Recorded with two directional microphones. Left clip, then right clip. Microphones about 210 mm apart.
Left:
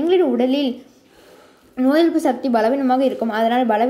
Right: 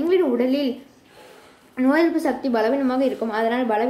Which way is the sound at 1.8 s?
15° left (ahead or behind).